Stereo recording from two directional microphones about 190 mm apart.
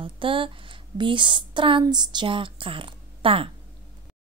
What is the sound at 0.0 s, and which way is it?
Speech, 25° right (ahead or behind).